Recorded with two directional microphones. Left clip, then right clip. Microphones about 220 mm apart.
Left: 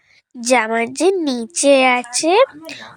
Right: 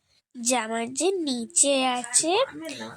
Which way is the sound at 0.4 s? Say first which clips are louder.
Left 11 dB; 25° left (ahead or behind).